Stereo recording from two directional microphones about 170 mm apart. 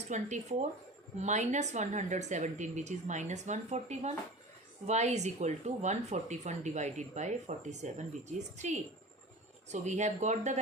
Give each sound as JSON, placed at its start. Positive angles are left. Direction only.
{"t": 0.1, "sound": "speech", "side_deg": -45}